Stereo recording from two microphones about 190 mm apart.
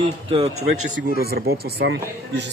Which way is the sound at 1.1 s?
55° right (ahead or behind).